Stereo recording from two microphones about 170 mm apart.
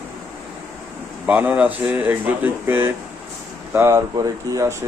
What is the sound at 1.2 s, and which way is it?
Speech, 10° right (ahead or behind).